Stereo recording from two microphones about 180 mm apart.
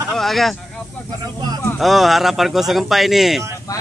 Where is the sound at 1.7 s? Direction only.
Centre (ahead or behind).